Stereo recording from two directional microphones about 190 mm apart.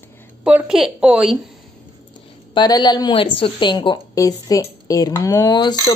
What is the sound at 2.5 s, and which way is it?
A woman's voice, 20° left (ahead or behind).